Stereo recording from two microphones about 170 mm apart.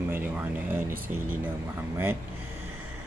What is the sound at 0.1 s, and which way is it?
Speech, 10° right (ahead or behind).